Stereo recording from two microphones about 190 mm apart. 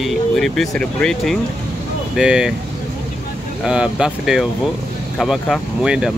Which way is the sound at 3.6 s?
5° right (ahead or behind).